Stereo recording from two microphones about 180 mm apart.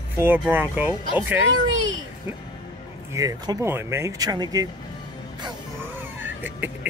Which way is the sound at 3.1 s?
20° right (ahead or behind).